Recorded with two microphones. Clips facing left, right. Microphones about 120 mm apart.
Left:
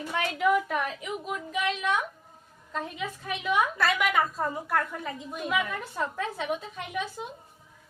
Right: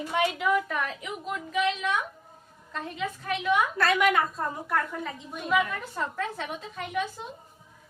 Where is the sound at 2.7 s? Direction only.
5° left (ahead or behind).